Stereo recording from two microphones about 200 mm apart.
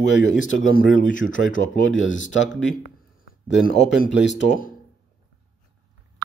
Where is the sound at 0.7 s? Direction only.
40° left (ahead or behind).